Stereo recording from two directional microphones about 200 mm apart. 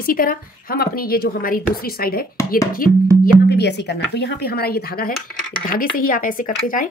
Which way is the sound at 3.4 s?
55° left (ahead or behind).